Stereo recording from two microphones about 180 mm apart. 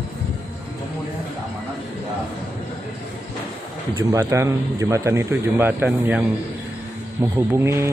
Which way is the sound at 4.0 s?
15° right (ahead or behind).